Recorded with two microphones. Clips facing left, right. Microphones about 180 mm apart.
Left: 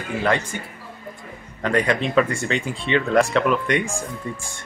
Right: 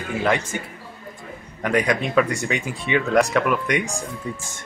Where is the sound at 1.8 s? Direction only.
10° right (ahead or behind).